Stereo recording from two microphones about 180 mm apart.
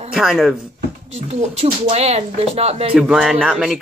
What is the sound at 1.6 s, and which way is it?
Speech, 35° right (ahead or behind).